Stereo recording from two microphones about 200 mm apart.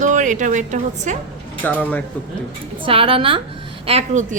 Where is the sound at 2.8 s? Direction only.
25° right (ahead or behind).